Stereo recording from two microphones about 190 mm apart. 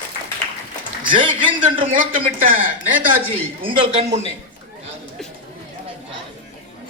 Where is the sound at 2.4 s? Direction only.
45° right (ahead or behind).